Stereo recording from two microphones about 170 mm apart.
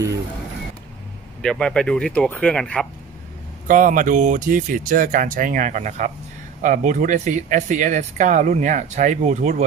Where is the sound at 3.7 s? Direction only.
50° right (ahead or behind).